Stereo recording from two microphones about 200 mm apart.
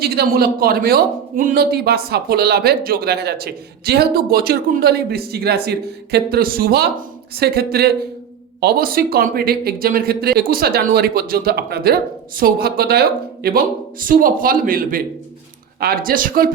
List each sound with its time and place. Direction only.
0.0 s a man's voice: 50° right (ahead or behind)